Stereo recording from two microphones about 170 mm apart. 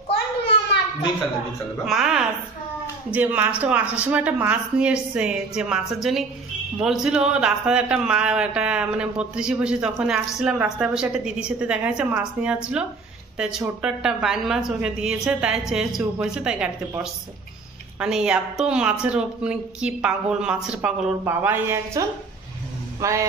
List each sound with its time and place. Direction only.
1.9 s a woman's voice: centre (ahead or behind); by 23.2 s 20° right (ahead or behind)